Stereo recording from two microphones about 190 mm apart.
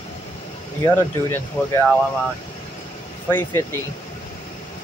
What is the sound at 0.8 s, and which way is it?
Speech, 15° left (ahead or behind).